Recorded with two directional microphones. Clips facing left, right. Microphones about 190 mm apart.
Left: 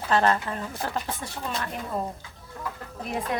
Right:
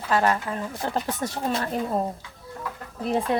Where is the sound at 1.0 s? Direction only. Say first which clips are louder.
Right 5 dB; 40° right (ahead or behind).